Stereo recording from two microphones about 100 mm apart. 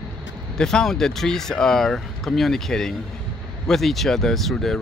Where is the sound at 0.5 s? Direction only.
5° left (ahead or behind).